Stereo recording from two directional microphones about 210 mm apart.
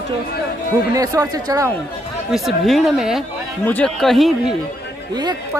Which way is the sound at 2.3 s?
Centre (ahead or behind).